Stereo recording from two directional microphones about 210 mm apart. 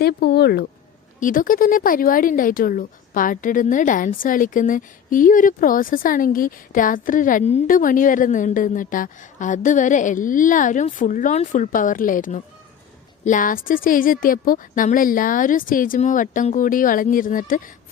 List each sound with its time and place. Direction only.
0.0 s speech: 50° left (ahead or behind)
1.2 s speech: 40° left (ahead or behind)